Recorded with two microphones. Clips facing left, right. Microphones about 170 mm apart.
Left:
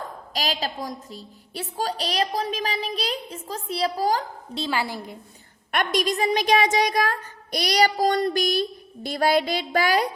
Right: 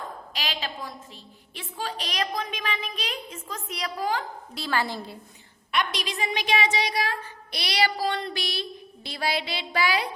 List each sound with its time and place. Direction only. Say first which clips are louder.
0.3 s a woman's voice: left 6 dB; 40° left (ahead or behind)
4.5 s a woman's voice: left 2 dB; 20° left (ahead or behind)
5.7 s a woman's voice: left 5 dB; 50° left (ahead or behind)